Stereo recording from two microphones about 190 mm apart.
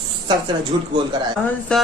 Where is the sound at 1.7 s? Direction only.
5° left (ahead or behind).